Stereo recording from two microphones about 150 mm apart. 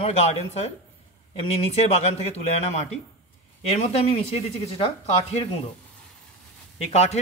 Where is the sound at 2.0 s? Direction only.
45° left (ahead or behind).